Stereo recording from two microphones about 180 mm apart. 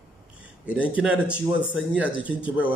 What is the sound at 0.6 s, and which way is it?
A man's voice, 5° right (ahead or behind).